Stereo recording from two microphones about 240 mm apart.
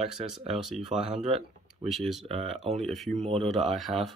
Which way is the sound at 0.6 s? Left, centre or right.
Centre.